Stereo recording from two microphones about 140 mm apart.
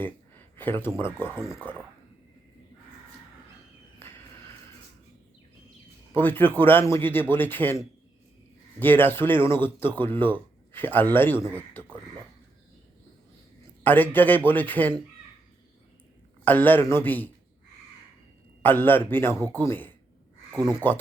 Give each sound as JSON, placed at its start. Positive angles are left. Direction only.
{"t": 0.5, "sound": "speech", "side_deg": 15}
{"t": 1.3, "sound": "speech", "side_deg": -5}
{"t": 6.1, "sound": "speech", "side_deg": 15}
{"t": 13.8, "sound": "speech", "side_deg": 15}
{"t": 16.4, "sound": "speech", "side_deg": 15}
{"t": 18.6, "sound": "speech", "side_deg": 15}